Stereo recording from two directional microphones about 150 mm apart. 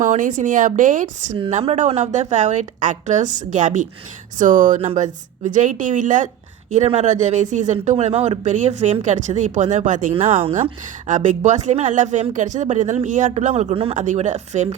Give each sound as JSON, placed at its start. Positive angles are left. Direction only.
{"t": 0.0, "sound": "a woman's voice", "side_deg": -60}
{"t": 4.8, "sound": "a woman's voice", "side_deg": -50}
{"t": 10.2, "sound": "speech", "side_deg": -40}
{"t": 10.5, "sound": "a woman's voice", "side_deg": -55}
{"t": 13.9, "sound": "a woman's voice", "side_deg": -55}